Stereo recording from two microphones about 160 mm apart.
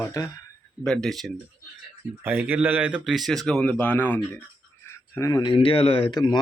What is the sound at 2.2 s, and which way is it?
Speech, 10° right (ahead or behind).